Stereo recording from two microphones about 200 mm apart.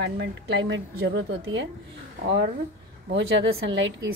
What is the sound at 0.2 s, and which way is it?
A woman's voice, 65° right (ahead or behind).